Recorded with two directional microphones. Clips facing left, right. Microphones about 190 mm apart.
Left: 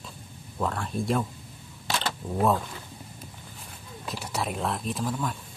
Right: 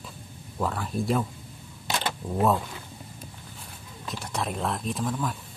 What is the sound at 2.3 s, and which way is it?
Speech, centre (ahead or behind).